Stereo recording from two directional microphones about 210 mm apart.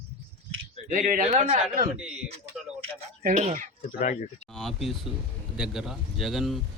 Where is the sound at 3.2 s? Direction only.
35° right (ahead or behind).